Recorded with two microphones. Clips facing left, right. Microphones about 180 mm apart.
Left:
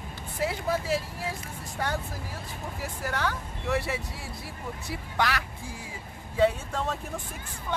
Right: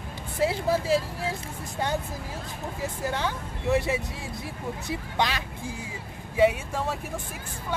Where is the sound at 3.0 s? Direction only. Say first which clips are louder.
Even; 20° right (ahead or behind).